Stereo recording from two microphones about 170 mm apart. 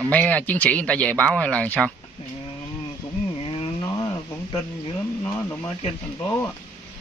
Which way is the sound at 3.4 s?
35° left (ahead or behind).